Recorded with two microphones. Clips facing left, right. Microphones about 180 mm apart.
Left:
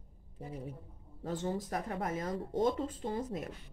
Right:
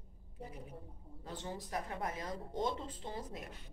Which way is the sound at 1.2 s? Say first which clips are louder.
Left 9 dB; 45° left (ahead or behind).